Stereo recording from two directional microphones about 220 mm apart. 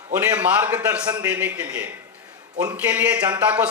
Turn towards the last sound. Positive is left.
turn(degrees=-10)  # may be behind; listen again after turning